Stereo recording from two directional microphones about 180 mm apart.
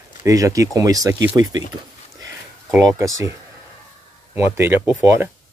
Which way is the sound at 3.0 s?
15° right (ahead or behind).